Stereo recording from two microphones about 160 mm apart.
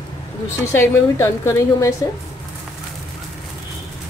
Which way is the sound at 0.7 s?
15° left (ahead or behind).